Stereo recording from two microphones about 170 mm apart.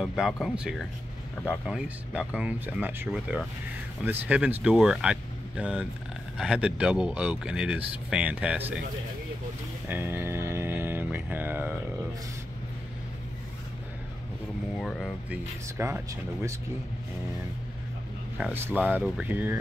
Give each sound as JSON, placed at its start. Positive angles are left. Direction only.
{"t": 0.0, "sound": "speech", "side_deg": -5}
{"t": 9.8, "sound": "music", "side_deg": -10}
{"t": 14.8, "sound": "a sound", "side_deg": 0}
{"t": 15.8, "sound": "speech", "side_deg": -15}
{"t": 18.4, "sound": "speech", "side_deg": -15}